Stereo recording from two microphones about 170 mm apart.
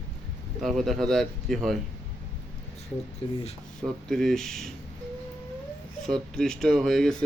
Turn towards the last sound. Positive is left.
turn(degrees=0)  # may be behind; listen again after turning